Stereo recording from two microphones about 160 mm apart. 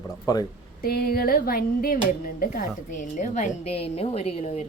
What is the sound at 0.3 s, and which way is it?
Speech, 25° left (ahead or behind).